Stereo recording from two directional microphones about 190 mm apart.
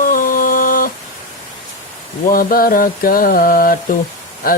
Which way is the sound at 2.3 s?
50° left (ahead or behind).